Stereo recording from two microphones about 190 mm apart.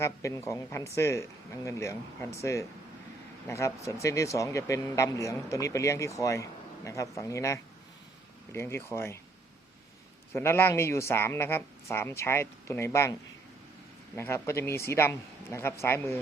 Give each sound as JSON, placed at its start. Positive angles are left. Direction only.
{"t": 0.0, "sound": "speech", "side_deg": 15}
{"t": 10.3, "sound": "speech", "side_deg": 10}
{"t": 14.2, "sound": "speech", "side_deg": 15}